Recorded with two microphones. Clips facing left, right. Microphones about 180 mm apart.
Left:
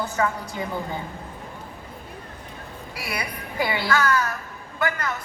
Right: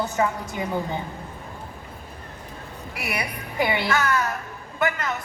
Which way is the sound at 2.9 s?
20° right (ahead or behind).